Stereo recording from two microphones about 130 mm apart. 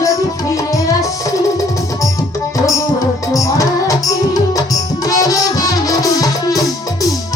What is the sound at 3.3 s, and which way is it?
Music, 25° left (ahead or behind).